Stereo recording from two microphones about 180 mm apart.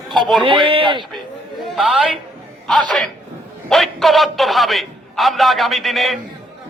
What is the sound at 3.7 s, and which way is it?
A man's voice, centre (ahead or behind).